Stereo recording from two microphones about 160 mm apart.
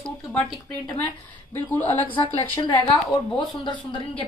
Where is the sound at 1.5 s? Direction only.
10° left (ahead or behind).